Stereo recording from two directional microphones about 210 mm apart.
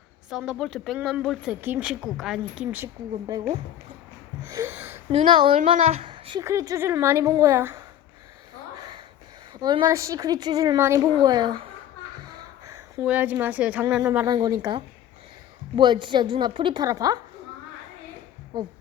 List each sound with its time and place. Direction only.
0.3 s speech: centre (ahead or behind)
4.4 s a sound: 15° right (ahead or behind)
5.1 s a woman's voice: 25° right (ahead or behind)
5.5 s a woman's voice: 35° right (ahead or behind); by 7.8 s 10° right (ahead or behind)
9.6 s a woman's voice: 20° right (ahead or behind)
12.6 s speech: 10° right (ahead or behind)
14.3 s a woman's voice: 20° right (ahead or behind)